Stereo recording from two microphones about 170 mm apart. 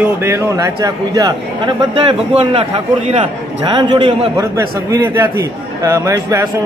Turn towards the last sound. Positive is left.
turn(degrees=-15)  # may be behind; listen again after turning